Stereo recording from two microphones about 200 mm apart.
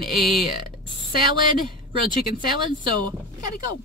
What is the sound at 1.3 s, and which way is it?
A woman's voice, 25° right (ahead or behind).